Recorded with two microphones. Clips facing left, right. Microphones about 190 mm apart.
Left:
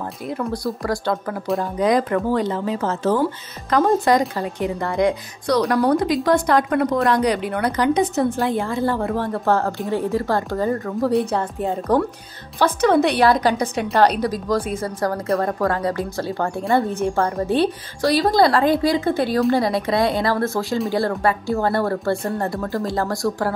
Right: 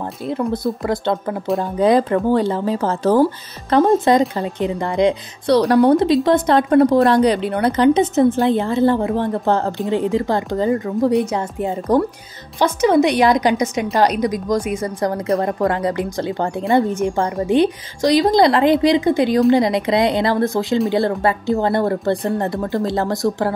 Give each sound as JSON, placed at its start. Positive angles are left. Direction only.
{"t": 0.3, "sound": "speech", "side_deg": -25}
{"t": 4.4, "sound": "a woman's voice", "side_deg": -20}